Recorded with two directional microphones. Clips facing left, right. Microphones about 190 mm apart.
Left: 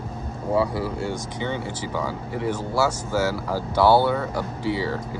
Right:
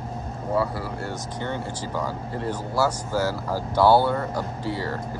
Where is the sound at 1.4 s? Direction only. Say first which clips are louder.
Left 2 dB; 65° left (ahead or behind).